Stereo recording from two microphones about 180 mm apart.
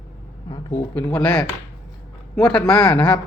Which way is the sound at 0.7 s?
5° left (ahead or behind).